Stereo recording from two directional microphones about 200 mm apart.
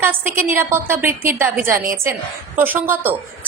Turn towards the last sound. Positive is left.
turn(degrees=-10)  # may be behind; listen again after turning